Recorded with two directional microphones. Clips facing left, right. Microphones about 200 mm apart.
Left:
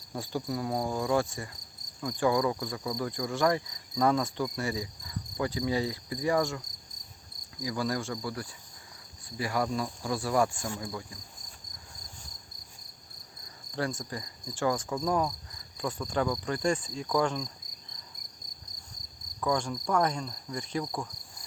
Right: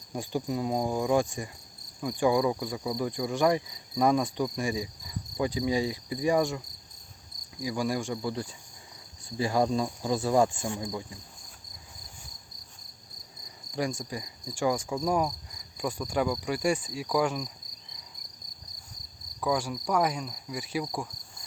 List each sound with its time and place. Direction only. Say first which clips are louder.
0.1 s speech: right 2 dB; 15° right (ahead or behind)
4.5 s cricket: right 2 dB; 15° right (ahead or behind)
7.6 s speech: right 2 dB; 15° right (ahead or behind)
13.7 s speech: right 2 dB; 15° right (ahead or behind)
19.4 s speech: right 1 dB; 5° right (ahead or behind)